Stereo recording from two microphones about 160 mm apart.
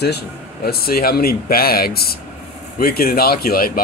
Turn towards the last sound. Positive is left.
turn(degrees=65)  # may be behind; listen again after turning